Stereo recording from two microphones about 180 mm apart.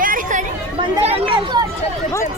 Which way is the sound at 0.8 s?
30° right (ahead or behind).